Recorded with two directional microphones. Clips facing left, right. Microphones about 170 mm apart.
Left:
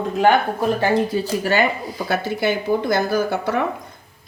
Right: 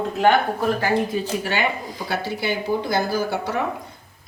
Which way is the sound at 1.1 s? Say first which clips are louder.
Left 4 dB; 40° left (ahead or behind).